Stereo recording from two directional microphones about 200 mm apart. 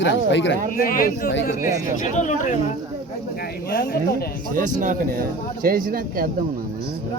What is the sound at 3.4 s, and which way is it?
Speech, 50° left (ahead or behind).